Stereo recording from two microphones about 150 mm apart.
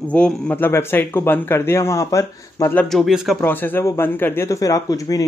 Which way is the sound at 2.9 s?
Centre (ahead or behind).